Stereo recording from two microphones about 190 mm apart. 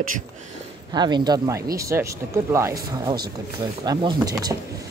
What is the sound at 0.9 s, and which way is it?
Speech, 20° right (ahead or behind).